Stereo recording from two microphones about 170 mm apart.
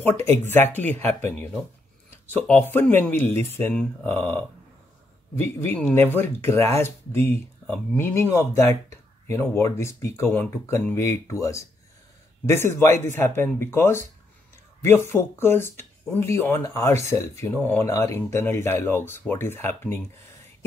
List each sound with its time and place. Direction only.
0.5 s speech: 10° left (ahead or behind)